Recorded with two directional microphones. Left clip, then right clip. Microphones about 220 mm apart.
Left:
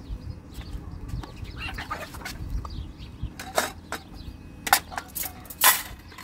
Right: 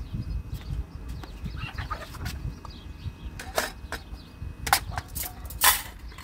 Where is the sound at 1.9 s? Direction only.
40° left (ahead or behind).